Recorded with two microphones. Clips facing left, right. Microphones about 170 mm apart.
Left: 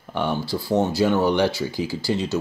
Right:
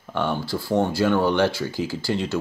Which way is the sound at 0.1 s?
15° left (ahead or behind).